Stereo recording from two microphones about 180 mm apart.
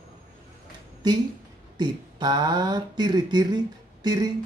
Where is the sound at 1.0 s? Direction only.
20° right (ahead or behind).